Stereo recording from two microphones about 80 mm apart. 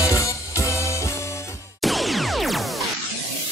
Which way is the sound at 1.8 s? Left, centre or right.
Centre.